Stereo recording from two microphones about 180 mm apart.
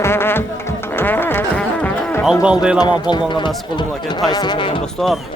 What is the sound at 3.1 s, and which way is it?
Speech, 25° left (ahead or behind).